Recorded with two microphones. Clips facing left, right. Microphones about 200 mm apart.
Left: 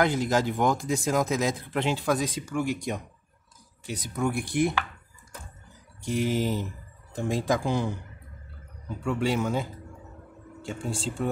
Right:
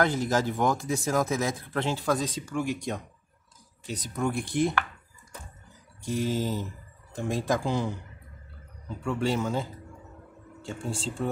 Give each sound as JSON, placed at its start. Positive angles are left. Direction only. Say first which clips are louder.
{"t": 0.0, "sound": "speech", "louder": "left 1 dB", "side_deg": 15}
{"t": 6.0, "sound": "speech", "louder": "left 2 dB", "side_deg": 15}
{"t": 9.0, "sound": "speech", "louder": "left 1 dB", "side_deg": 10}
{"t": 10.9, "sound": "speech", "louder": "left 1 dB", "side_deg": 15}